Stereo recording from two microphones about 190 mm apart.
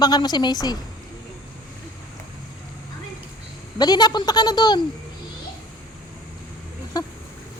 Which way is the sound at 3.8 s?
20° left (ahead or behind).